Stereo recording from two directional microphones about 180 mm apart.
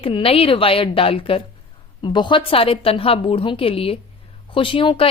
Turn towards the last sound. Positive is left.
turn(degrees=30)  # may be behind; listen again after turning